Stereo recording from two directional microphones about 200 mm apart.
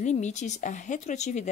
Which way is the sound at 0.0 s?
35° left (ahead or behind).